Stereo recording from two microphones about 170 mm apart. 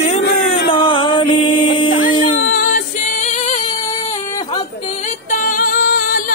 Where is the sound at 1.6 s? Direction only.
30° left (ahead or behind).